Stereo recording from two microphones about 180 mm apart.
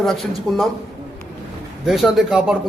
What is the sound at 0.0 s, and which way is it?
Speech, centre (ahead or behind).